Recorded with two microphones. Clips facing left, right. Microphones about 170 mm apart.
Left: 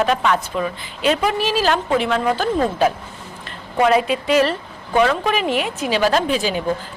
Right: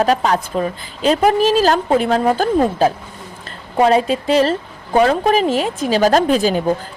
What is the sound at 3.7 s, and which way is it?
A woman's voice, 30° right (ahead or behind).